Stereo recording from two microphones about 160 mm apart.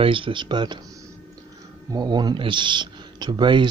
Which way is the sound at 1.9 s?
25° right (ahead or behind).